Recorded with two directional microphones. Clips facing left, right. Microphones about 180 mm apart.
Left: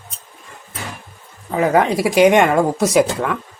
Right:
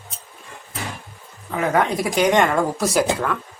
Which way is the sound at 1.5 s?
30° left (ahead or behind).